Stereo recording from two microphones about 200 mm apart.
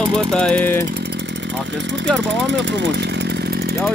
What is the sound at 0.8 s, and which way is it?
Chainsaw, 55° right (ahead or behind).